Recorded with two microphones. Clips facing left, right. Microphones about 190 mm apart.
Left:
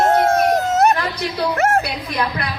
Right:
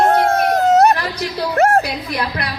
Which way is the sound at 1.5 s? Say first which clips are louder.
Right 5 dB; 35° right (ahead or behind).